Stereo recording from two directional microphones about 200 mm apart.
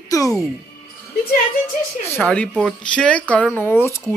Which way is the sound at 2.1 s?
5° left (ahead or behind).